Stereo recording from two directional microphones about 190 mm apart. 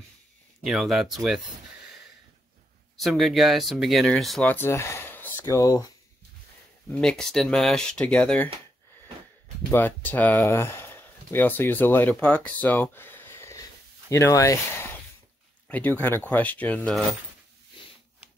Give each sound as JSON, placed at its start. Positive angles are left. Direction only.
{"t": 0.7, "sound": "speech", "side_deg": 0}
{"t": 3.0, "sound": "speech", "side_deg": 0}
{"t": 6.9, "sound": "speech", "side_deg": 5}
{"t": 9.7, "sound": "speech", "side_deg": 10}